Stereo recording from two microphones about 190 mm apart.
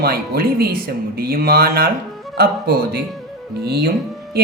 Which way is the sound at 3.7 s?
55° right (ahead or behind).